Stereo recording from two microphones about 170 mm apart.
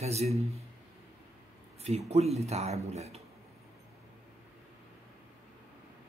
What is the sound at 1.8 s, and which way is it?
Speech, 40° right (ahead or behind).